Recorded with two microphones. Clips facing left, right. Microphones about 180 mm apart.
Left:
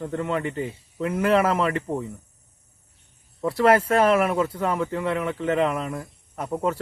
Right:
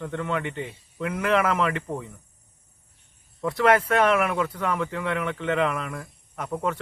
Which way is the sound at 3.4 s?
30° left (ahead or behind).